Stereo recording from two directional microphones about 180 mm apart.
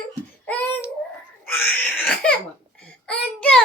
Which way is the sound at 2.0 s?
5° left (ahead or behind).